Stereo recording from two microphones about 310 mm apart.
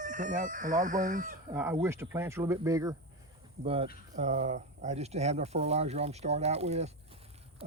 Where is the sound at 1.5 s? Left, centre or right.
Centre.